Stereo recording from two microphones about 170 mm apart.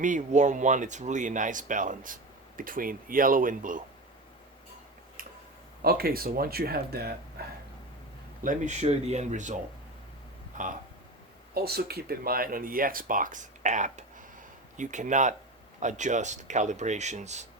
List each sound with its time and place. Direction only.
0.0 s speech: 45° right (ahead or behind)
5.8 s speech: 65° right (ahead or behind)
8.4 s speech: 45° right (ahead or behind)
11.5 s speech: 65° right (ahead or behind); by 17.4 s 40° right (ahead or behind)